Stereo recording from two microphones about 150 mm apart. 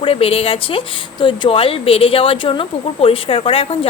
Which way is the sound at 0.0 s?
40° left (ahead or behind).